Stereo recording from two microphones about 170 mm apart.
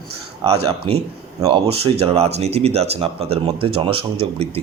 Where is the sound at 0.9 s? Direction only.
30° right (ahead or behind).